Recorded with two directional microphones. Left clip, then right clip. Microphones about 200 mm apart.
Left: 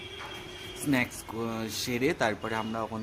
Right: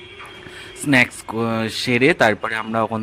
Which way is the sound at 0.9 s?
30° right (ahead or behind).